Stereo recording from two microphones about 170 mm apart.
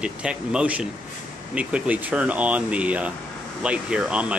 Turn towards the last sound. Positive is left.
turn(degrees=-5)  # may be behind; listen again after turning